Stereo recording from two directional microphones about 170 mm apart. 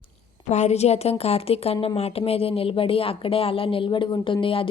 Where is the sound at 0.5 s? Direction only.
40° left (ahead or behind).